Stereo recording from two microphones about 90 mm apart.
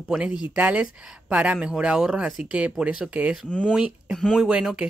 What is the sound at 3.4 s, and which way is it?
Speech, 15° left (ahead or behind).